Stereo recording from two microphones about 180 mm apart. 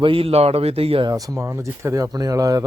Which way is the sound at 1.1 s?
20° right (ahead or behind).